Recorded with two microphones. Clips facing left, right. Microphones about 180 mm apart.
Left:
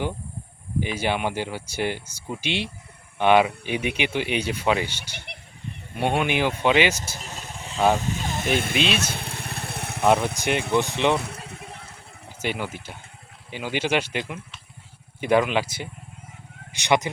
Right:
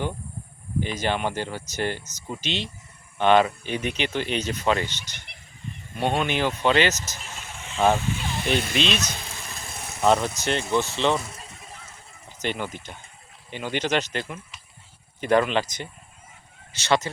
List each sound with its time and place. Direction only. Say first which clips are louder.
0.8 s speech: left 1 dB; 10° left (ahead or behind)
7.2 s vehicle: left 3 dB; 40° left (ahead or behind)
8.0 s speech: left 1 dB; 45° left (ahead or behind)
9.0 s vehicle: left 3 dB; 55° left (ahead or behind)
10.0 s speech: left 1 dB; 10° left (ahead or behind)
11.2 s a sound: left 5 dB; 60° left (ahead or behind)
12.4 s speech: even; 10° left (ahead or behind)